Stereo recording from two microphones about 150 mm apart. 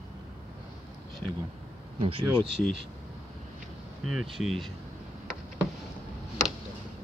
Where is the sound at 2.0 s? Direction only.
40° right (ahead or behind).